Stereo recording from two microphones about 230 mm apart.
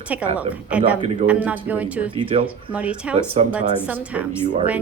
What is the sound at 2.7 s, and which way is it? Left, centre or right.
A woman's voice, centre.